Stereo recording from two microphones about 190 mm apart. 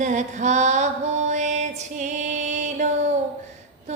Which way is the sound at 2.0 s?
40° right (ahead or behind).